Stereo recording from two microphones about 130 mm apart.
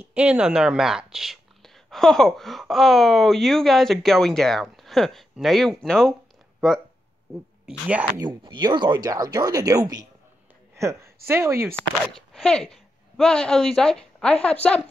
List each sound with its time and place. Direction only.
0.0 s speech: 10° right (ahead or behind)
8.2 s a woman's voice: 35° right (ahead or behind); by 11.7 s 20° right (ahead or behind)
11.7 s speech: 5° left (ahead or behind)